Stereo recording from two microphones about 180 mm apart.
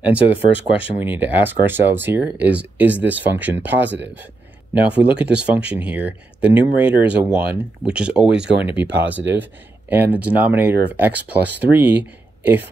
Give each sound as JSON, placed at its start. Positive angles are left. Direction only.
{"t": 0.0, "sound": "speech", "side_deg": -10}